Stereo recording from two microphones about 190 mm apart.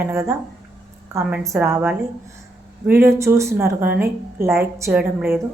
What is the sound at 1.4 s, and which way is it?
Speech, 15° right (ahead or behind).